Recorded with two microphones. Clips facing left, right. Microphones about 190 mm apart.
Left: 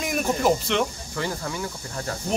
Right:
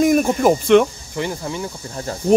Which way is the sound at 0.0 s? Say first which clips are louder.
Right 9 dB; 45° right (ahead or behind).